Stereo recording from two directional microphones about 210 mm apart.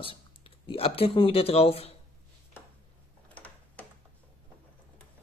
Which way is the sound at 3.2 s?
5° left (ahead or behind).